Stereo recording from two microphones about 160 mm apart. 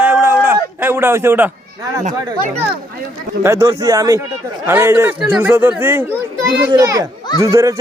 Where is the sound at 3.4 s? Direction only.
15° right (ahead or behind).